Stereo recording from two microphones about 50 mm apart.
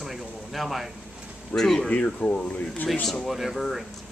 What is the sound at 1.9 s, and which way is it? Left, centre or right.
Speech, left.